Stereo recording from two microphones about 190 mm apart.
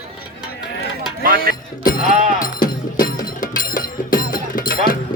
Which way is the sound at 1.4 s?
50° left (ahead or behind).